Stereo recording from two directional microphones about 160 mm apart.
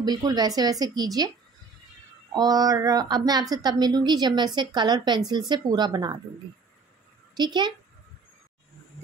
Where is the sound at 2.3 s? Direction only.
25° right (ahead or behind).